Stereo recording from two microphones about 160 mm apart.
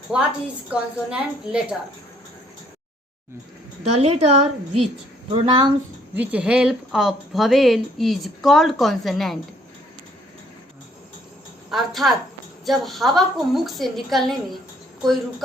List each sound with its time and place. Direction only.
0.1 s a woman's voice: 5° right (ahead or behind)
3.9 s a woman's voice: 40° right (ahead or behind)
5.3 s a woman's voice: 30° right (ahead or behind)
6.1 s speech: 5° right (ahead or behind)
11.7 s speech: centre (ahead or behind)